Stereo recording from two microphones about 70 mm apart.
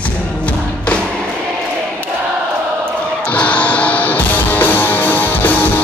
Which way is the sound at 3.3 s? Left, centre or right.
Left.